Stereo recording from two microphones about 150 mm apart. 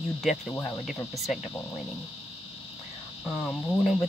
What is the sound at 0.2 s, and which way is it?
Speech, centre (ahead or behind).